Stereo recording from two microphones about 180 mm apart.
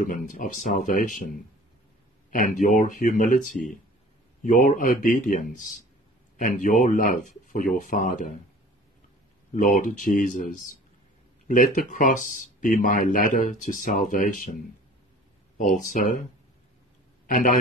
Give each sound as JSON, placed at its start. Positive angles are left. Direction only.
{"t": 0.0, "sound": "speech", "side_deg": 45}
{"t": 2.3, "sound": "speech", "side_deg": 45}
{"t": 9.6, "sound": "speech", "side_deg": 45}
{"t": 11.4, "sound": "speech", "side_deg": 45}
{"t": 17.3, "sound": "a man's voice", "side_deg": 45}